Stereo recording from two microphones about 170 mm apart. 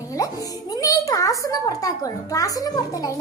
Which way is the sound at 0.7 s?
20° left (ahead or behind).